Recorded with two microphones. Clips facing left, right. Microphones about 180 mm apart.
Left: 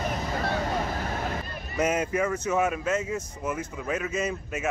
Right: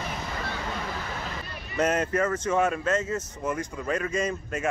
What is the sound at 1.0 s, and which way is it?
Hubbub, 50° left (ahead or behind).